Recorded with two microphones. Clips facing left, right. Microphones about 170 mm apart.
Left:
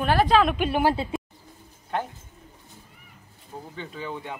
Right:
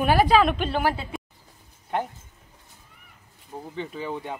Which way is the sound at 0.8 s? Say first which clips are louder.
Left 3 dB; 30° left (ahead or behind).